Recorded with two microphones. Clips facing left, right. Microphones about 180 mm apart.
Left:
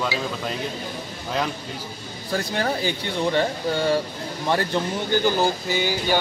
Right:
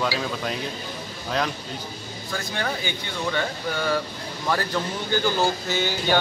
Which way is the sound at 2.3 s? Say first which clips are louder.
Left 5 dB; 35° left (ahead or behind).